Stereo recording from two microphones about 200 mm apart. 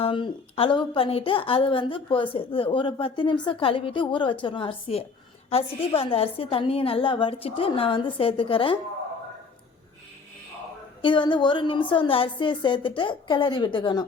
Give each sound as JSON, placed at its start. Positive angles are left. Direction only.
{"t": 0.0, "sound": "a woman's voice", "side_deg": 25}
{"t": 11.0, "sound": "a woman's voice", "side_deg": 25}